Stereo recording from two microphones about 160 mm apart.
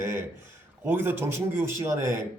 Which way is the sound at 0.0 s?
15° right (ahead or behind).